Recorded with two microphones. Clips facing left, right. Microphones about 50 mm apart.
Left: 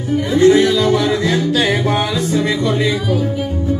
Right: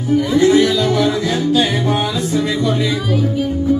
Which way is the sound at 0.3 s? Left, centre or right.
Left.